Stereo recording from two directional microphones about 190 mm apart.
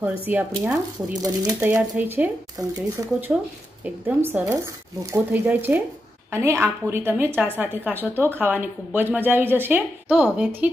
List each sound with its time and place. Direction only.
0.0 s a woman's voice: 10° right (ahead or behind)
1.2 s speech: 20° right (ahead or behind)
1.6 s a woman's voice: 10° right (ahead or behind)